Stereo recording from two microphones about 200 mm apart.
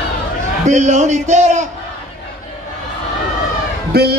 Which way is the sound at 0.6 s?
35° right (ahead or behind).